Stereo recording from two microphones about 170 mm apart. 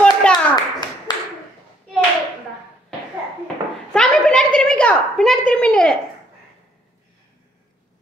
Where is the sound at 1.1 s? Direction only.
25° left (ahead or behind).